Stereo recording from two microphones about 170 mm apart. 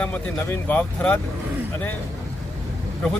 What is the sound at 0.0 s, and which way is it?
A man's voice, 10° left (ahead or behind).